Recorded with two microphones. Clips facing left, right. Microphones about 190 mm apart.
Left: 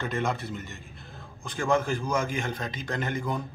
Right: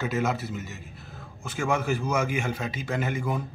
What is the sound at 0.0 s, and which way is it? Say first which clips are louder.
A man's voice: right 2 dB; 5° right (ahead or behind).